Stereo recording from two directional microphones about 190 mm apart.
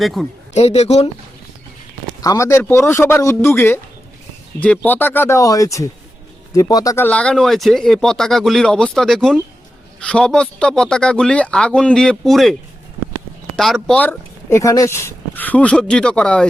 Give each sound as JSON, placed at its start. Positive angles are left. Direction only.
{"t": 0.0, "sound": "speech", "side_deg": 0}
{"t": 0.5, "sound": "speech", "side_deg": 35}
{"t": 2.2, "sound": "speech", "side_deg": 15}
{"t": 13.6, "sound": "speech", "side_deg": 0}